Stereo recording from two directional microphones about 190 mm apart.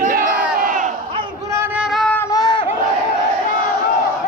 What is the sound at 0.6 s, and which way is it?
Crowd, 45° right (ahead or behind).